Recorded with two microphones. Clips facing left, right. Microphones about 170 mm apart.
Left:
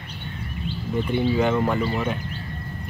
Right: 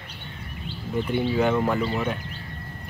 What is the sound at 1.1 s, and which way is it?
Speech, centre (ahead or behind).